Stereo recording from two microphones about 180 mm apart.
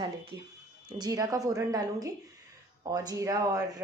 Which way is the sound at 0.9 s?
20° right (ahead or behind).